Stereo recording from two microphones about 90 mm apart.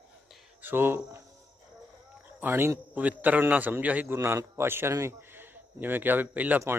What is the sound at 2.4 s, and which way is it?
A man's voice, 25° right (ahead or behind).